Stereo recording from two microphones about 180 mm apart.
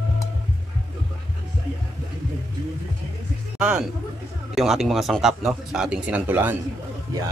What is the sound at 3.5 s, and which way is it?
Speech, 5° right (ahead or behind).